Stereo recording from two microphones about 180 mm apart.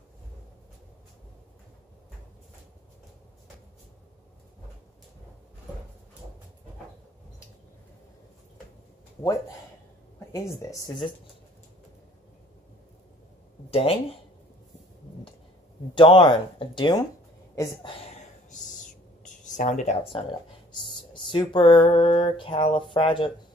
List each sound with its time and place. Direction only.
10.1 s speech: 15° left (ahead or behind)
13.7 s speech: 35° left (ahead or behind)
15.9 s mantra: 30° left (ahead or behind)
17.8 s a sound: 40° left (ahead or behind)
21.8 s mantra: 30° left (ahead or behind)